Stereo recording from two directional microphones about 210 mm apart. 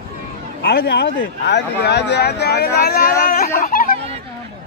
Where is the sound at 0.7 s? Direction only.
55° left (ahead or behind).